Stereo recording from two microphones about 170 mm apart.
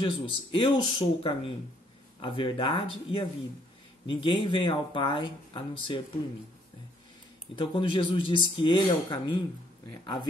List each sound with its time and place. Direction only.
0.0 s speech: 30° left (ahead or behind)
7.5 s speech: 30° left (ahead or behind)